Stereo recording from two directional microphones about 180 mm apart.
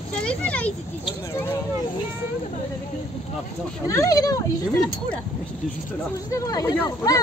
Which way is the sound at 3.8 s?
20° left (ahead or behind).